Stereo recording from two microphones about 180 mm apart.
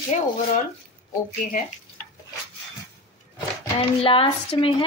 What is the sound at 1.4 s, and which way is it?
Speech, 50° left (ahead or behind).